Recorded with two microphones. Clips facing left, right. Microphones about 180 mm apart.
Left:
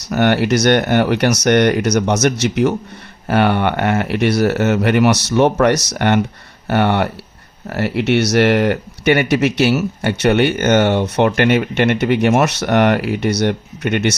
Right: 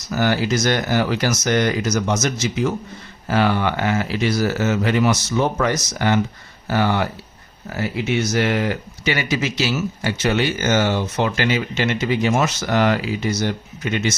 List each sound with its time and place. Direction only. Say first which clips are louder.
0.0 s speech: left 5 dB; 65° left (ahead or behind)